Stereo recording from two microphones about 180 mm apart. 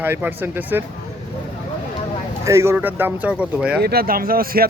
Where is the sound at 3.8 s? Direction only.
60° right (ahead or behind).